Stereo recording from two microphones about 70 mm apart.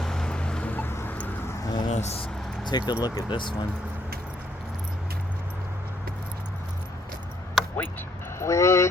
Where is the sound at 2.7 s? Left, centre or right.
Left.